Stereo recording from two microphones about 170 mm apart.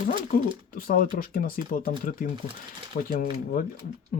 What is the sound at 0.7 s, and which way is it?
Speech, 55° left (ahead or behind).